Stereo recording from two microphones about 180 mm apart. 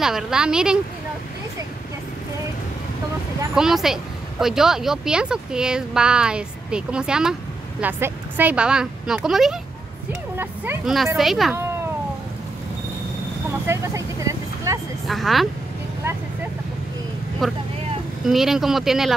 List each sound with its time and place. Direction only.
0.0 s a woman's voice: 5° right (ahead or behind)
3.5 s a woman's voice: centre (ahead or behind)
13.7 s speech: 15° right (ahead or behind)
15.0 s a woman's voice: centre (ahead or behind)
17.4 s a woman's voice: centre (ahead or behind)